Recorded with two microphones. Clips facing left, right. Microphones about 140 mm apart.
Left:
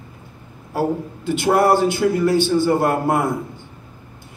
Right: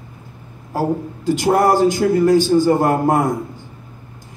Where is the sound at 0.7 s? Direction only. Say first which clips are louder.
Right 1 dB; 40° right (ahead or behind).